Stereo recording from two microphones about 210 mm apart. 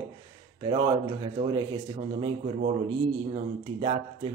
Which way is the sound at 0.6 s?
25° right (ahead or behind).